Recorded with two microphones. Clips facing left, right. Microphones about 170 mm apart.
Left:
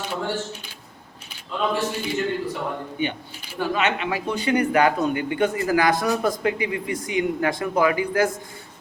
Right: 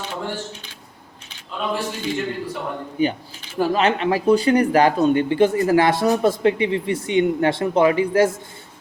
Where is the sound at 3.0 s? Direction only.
35° right (ahead or behind).